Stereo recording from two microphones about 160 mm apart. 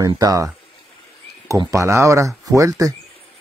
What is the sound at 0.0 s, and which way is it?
Speech, 25° right (ahead or behind).